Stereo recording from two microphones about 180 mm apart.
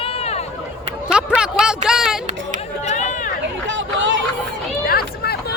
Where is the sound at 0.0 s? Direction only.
35° left (ahead or behind).